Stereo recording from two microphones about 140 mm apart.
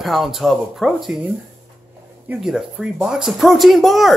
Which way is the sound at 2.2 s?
10° right (ahead or behind).